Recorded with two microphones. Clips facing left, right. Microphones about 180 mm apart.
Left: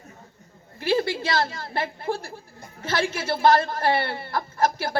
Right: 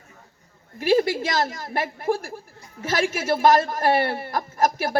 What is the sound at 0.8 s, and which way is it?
A woman's voice, 15° right (ahead or behind).